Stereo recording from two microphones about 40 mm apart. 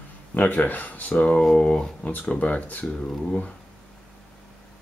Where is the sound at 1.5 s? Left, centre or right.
Left.